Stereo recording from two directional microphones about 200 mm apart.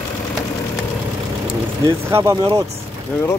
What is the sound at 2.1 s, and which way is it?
Speech, 15° right (ahead or behind).